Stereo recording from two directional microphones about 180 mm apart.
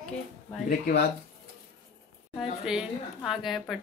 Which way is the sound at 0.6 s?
60° left (ahead or behind).